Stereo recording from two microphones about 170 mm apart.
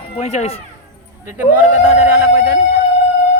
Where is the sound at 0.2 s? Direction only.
35° left (ahead or behind).